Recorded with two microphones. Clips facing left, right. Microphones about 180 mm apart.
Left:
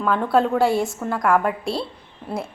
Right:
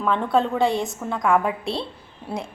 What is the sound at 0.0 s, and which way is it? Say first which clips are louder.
A woman's voice: left 2 dB; 5° left (ahead or behind).